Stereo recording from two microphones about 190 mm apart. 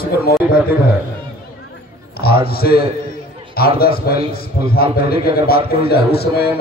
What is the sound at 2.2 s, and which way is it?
A man's voice, 55° left (ahead or behind).